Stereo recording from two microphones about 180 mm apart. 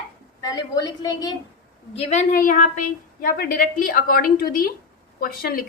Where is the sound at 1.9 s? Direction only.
40° left (ahead or behind).